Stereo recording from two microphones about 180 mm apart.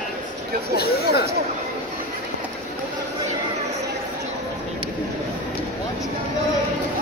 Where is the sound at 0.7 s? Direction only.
60° left (ahead or behind).